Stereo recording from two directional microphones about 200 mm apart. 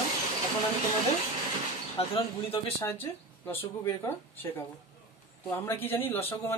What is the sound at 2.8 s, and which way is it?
Speech, 10° left (ahead or behind).